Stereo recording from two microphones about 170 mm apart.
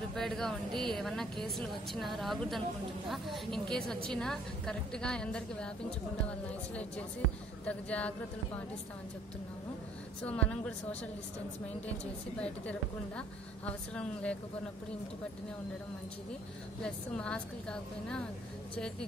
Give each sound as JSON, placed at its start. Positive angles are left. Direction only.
{"t": 0.1, "sound": "a woman's voice", "side_deg": 0}
{"t": 10.2, "sound": "a woman's voice", "side_deg": 5}
{"t": 12.4, "sound": "a woman's voice", "side_deg": 5}
{"t": 16.8, "sound": "a woman's voice", "side_deg": 5}